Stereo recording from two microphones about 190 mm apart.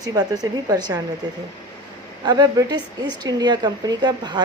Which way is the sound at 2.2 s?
20° right (ahead or behind).